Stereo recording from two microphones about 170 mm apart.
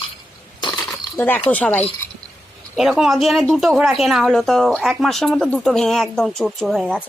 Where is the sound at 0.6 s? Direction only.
20° left (ahead or behind).